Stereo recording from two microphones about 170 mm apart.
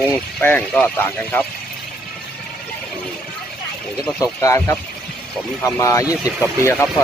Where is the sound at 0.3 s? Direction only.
10° left (ahead or behind).